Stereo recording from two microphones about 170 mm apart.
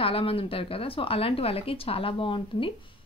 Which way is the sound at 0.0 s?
30° left (ahead or behind).